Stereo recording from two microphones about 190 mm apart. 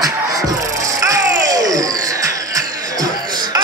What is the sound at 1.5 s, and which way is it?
Music, 20° right (ahead or behind).